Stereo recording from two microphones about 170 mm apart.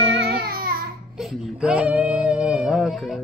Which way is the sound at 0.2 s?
65° right (ahead or behind).